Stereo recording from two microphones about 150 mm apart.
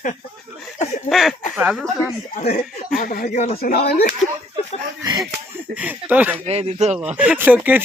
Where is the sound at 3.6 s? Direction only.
90° left.